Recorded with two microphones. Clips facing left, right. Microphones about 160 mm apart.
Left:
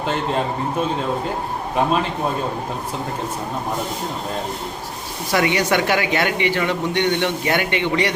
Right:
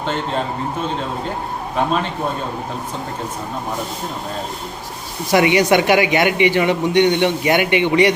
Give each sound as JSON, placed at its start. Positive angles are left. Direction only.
{"t": 5.3, "sound": "speech", "side_deg": -15}